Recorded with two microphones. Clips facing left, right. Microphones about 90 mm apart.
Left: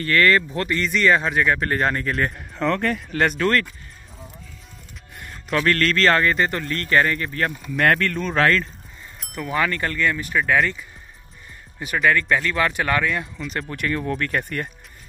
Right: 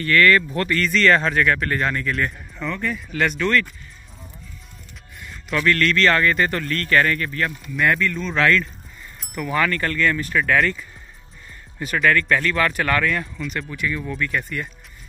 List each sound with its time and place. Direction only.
0.0 s speech: 30° left (ahead or behind)
1.6 s speech: 35° left (ahead or behind)
2.6 s speech: 75° left (ahead or behind)
3.1 s speech: 40° left (ahead or behind)
5.7 s speech: 35° left (ahead or behind)
7.7 s speech: 55° left (ahead or behind)
8.4 s speech: 35° left (ahead or behind)
9.3 s speech: 15° left (ahead or behind)
12.0 s speech: 15° left (ahead or behind)
13.7 s speech: 55° left (ahead or behind)